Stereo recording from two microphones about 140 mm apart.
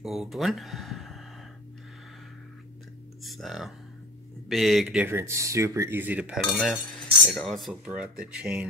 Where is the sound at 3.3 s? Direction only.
Centre (ahead or behind).